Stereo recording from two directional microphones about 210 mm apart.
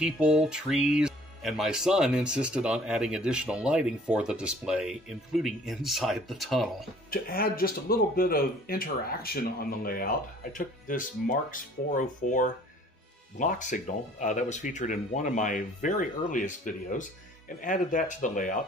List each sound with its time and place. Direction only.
0.0 s speech: 5° right (ahead or behind)
7.1 s speech: 45° left (ahead or behind)